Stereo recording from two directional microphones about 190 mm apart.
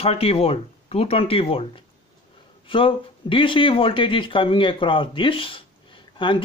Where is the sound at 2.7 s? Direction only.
30° left (ahead or behind).